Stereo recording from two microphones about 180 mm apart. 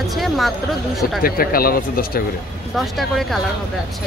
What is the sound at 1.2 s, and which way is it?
Speech, 55° left (ahead or behind).